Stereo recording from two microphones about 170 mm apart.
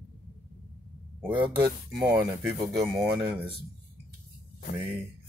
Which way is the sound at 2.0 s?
15° right (ahead or behind).